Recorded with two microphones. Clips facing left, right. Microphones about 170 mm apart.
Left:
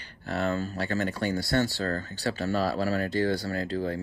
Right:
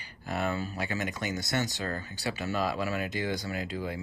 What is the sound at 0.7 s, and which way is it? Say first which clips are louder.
Speech: left 4 dB; 15° right (ahead or behind).